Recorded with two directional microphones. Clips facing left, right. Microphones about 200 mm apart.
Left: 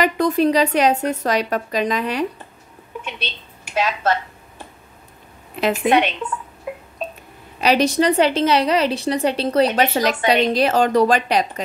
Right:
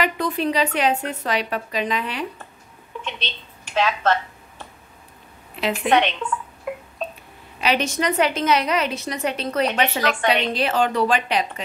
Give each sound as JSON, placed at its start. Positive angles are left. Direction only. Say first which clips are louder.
{"t": 0.0, "sound": "a woman's voice", "louder": "left 6 dB", "side_deg": 45}
{"t": 3.0, "sound": "a sound", "louder": "left 1 dB", "side_deg": 10}
{"t": 5.9, "sound": "speech", "louder": "left 1 dB", "side_deg": 10}
{"t": 7.6, "sound": "a woman's voice", "louder": "left 6 dB", "side_deg": 35}